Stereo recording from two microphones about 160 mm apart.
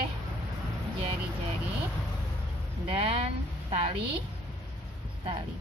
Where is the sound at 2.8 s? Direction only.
35° right (ahead or behind).